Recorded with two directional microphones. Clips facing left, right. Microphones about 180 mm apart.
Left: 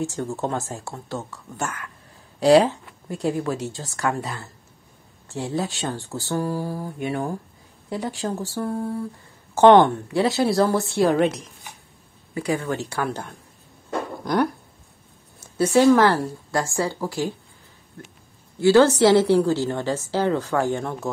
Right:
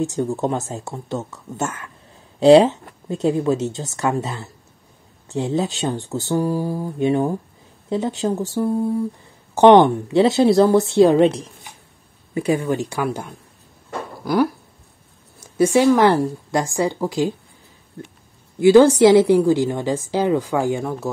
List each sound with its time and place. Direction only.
0.0 s speech: 20° right (ahead or behind)
12.4 s a woman's voice: 15° right (ahead or behind)